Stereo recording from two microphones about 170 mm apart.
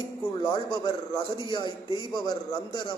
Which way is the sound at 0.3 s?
25° left (ahead or behind).